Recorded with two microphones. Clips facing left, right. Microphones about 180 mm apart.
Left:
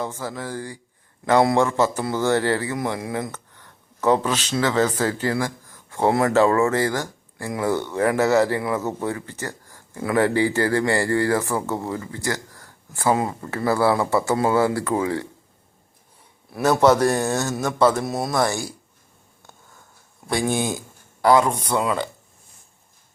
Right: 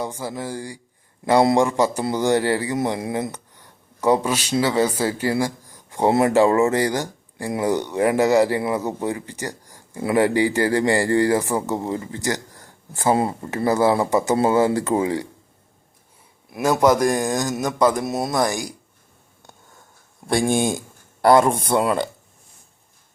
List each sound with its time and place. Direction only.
0.0 s speech: 10° right (ahead or behind)
3.6 s a sound: 10° right (ahead or behind)
4.6 s speech: 10° right (ahead or behind)
16.5 s speech: 10° right (ahead or behind)
21.7 s speech: 20° right (ahead or behind)